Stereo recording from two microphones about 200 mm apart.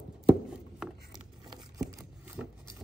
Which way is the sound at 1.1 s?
20° right (ahead or behind).